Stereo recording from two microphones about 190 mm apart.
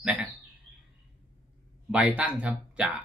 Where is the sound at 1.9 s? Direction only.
5° right (ahead or behind).